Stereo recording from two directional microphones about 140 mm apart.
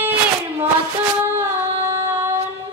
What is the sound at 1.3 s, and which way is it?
Music, 20° right (ahead or behind).